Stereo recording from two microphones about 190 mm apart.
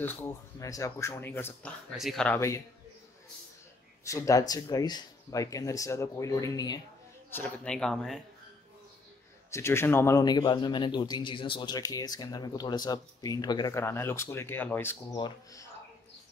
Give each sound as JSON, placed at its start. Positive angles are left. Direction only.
{"t": 0.0, "sound": "speech", "side_deg": 10}
{"t": 1.9, "sound": "speech", "side_deg": 0}
{"t": 4.0, "sound": "speech", "side_deg": 15}
{"t": 7.2, "sound": "speech", "side_deg": 10}
{"t": 9.5, "sound": "speech", "side_deg": 15}
{"t": 15.1, "sound": "speech", "side_deg": 25}